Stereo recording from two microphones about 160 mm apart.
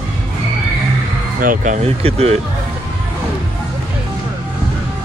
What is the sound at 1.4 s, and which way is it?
Speech, 55° right (ahead or behind).